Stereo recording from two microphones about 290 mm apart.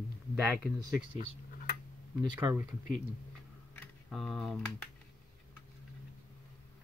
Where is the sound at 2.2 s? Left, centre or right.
Centre.